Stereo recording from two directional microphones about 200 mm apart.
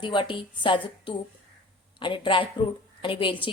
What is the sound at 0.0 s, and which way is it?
A woman's voice, 25° left (ahead or behind).